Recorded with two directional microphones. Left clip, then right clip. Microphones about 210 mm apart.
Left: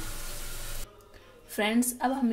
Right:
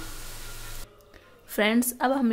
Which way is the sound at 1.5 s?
40° right (ahead or behind).